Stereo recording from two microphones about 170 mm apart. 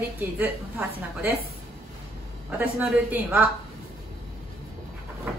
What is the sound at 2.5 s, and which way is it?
A woman's voice, 10° right (ahead or behind).